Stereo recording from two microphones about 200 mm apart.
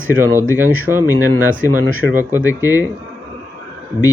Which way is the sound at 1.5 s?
40° right (ahead or behind).